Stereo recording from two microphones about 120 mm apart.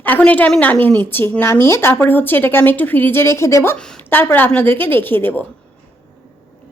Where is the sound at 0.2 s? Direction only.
10° left (ahead or behind).